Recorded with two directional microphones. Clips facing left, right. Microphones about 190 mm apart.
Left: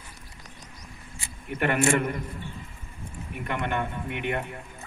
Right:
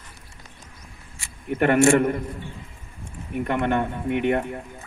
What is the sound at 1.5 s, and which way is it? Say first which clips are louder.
Speech: right 7 dB; 45° right (ahead or behind).